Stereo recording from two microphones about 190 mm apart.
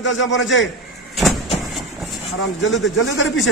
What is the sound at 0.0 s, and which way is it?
Speech, 75° left (ahead or behind).